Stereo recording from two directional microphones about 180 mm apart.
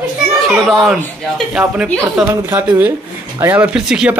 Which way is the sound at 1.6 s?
10° right (ahead or behind).